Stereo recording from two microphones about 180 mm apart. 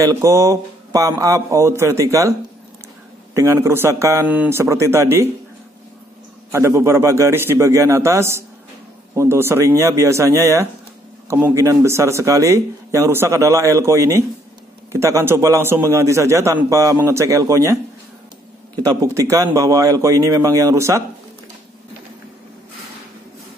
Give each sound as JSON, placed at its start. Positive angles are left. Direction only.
{"t": 0.0, "sound": "a man's voice", "side_deg": -15}
{"t": 3.3, "sound": "a man's voice", "side_deg": -15}
{"t": 6.5, "sound": "a man's voice", "side_deg": -15}
{"t": 18.9, "sound": "a man's voice", "side_deg": -15}